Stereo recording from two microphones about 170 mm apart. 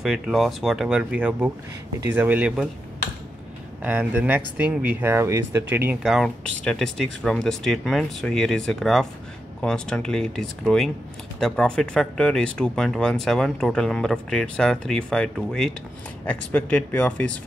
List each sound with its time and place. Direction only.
0.0 s speech: centre (ahead or behind)
3.8 s speech: 10° right (ahead or behind)
6.1 s speech: 5° left (ahead or behind)